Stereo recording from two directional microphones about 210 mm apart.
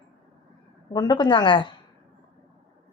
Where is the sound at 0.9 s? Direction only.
20° left (ahead or behind).